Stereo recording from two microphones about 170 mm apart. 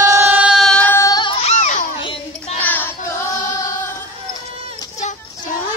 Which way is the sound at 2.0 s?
30° left (ahead or behind).